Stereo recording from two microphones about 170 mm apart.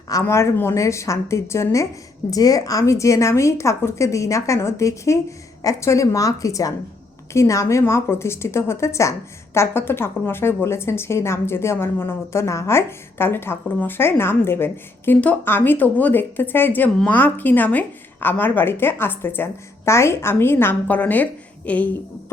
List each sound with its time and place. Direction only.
0.1 s a woman's voice: 15° left (ahead or behind)